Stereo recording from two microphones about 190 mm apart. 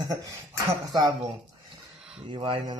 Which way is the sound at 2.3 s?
30° right (ahead or behind).